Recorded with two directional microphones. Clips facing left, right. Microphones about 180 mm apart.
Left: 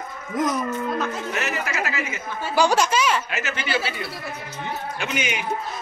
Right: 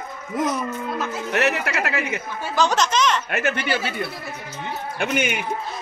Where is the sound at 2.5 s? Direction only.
10° left (ahead or behind).